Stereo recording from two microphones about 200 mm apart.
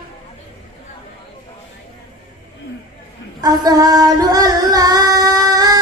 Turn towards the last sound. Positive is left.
turn(degrees=-20)  # may be behind; listen again after turning